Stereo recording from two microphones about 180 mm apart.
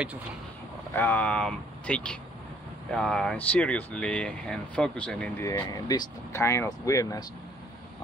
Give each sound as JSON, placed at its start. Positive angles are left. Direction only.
{"t": 0.9, "sound": "speech", "side_deg": 10}
{"t": 5.5, "sound": "speech", "side_deg": 20}